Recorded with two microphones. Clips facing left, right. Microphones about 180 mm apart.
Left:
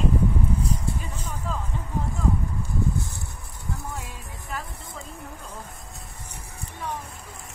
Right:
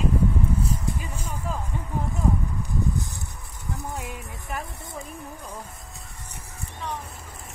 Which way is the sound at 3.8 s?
20° right (ahead or behind).